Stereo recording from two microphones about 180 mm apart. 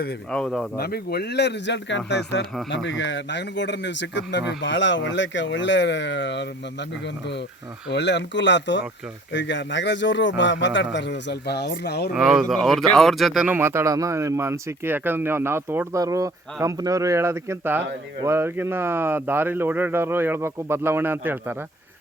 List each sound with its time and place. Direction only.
0.3 s speech: 5° left (ahead or behind)
0.8 s speech: 60° left (ahead or behind); by 2.4 s 75° left (ahead or behind)
2.6 s a man's voice: 85° left
7.9 s a man's voice: 75° left (ahead or behind)
12.1 s speech: 5° right (ahead or behind)